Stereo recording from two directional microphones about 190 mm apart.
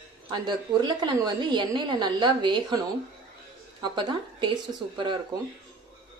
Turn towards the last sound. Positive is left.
turn(degrees=-25)  # may be behind; listen again after turning